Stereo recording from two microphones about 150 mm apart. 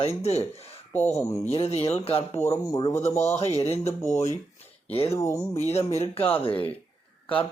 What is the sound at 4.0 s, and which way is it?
Speech, 20° left (ahead or behind).